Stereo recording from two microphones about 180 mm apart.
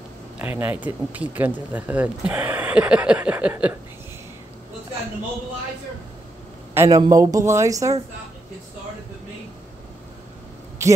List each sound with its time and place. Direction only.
0.4 s speech: 10° right (ahead or behind)
6.7 s a sound: 15° right (ahead or behind)
7.0 s speech: 20° right (ahead or behind)
10.8 s a man's voice: 15° right (ahead or behind)